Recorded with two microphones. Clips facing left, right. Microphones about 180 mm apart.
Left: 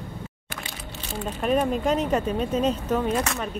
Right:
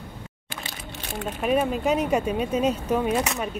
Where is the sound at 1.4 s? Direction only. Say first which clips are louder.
Even; 5° right (ahead or behind).